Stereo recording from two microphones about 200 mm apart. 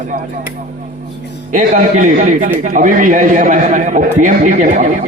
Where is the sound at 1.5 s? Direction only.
40° right (ahead or behind).